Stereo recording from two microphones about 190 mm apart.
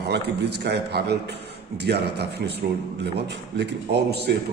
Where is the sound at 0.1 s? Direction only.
60° right (ahead or behind).